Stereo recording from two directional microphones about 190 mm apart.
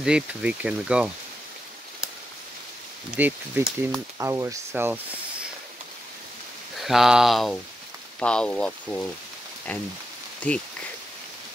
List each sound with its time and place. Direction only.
0.0 s speech: 5° right (ahead or behind)
3.2 s speech: 10° right (ahead or behind)
6.8 s speech: centre (ahead or behind)
10.4 s speech: 5° left (ahead or behind)